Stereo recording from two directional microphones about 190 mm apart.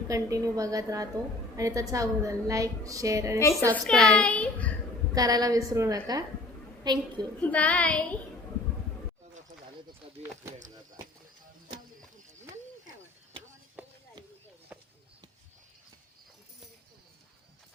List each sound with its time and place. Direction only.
0.1 s a woman's voice: 15° right (ahead or behind)
3.7 s a child's voice: 5° left (ahead or behind)
5.1 s a woman's voice: 20° right (ahead or behind)
7.4 s child singing: 10° left (ahead or behind)
14.7 s a sound: 10° right (ahead or behind)